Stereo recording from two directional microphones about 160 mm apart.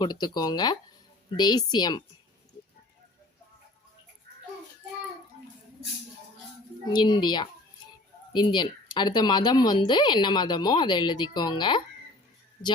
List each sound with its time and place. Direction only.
0.0 s speech: 25° left (ahead or behind)
6.9 s speech: 30° left (ahead or behind)